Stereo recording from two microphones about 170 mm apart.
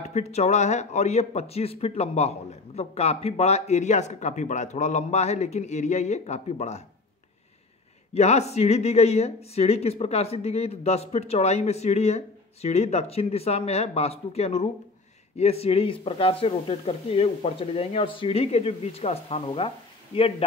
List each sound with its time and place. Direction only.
0.1 s speech: 40° left (ahead or behind)
8.1 s speech: 40° left (ahead or behind)